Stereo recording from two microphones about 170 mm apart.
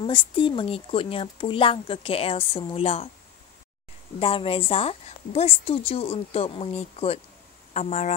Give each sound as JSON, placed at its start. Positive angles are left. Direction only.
{"t": 0.0, "sound": "speech", "side_deg": 30}
{"t": 4.2, "sound": "speech", "side_deg": 35}